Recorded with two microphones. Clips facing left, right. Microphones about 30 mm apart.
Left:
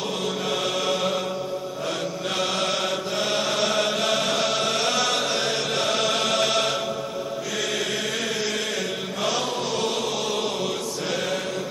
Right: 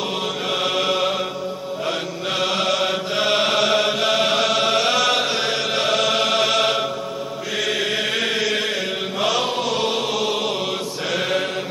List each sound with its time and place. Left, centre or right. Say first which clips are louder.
0.5 s mantra: right 5 dB; right
2.8 s chant: right 5 dB; right
7.6 s chant: right 6 dB; right
9.8 s chant: right 4 dB; right
11.1 s mantra: right 7 dB; right